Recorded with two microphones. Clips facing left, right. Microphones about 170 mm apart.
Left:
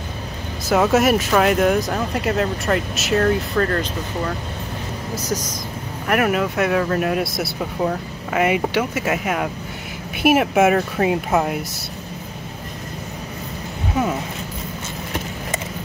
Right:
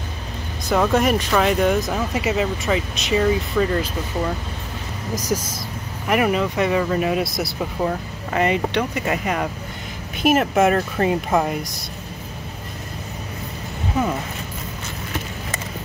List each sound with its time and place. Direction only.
0.7 s speech: 5° left (ahead or behind)
5.2 s speech: 10° right (ahead or behind)